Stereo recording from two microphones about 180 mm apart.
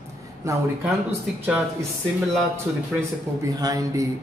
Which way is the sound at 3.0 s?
20° right (ahead or behind).